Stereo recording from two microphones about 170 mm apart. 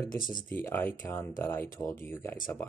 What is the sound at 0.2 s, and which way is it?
Speech, 55° left (ahead or behind).